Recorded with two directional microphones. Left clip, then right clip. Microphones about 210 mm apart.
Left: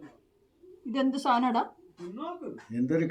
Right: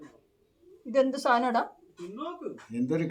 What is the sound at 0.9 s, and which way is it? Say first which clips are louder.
Speech: right 3 dB; 20° right (ahead or behind).